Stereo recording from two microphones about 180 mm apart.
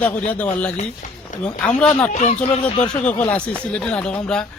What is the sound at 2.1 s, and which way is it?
Speech, 40° left (ahead or behind).